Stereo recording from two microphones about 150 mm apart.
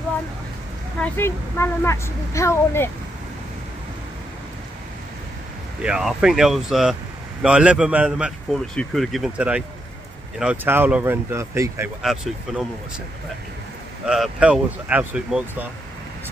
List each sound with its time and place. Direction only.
0.9 s a woman's voice: 10° left (ahead or behind)
5.8 s speech: 5° right (ahead or behind)
12.0 s speech: centre (ahead or behind)
14.0 s speech: 5° right (ahead or behind)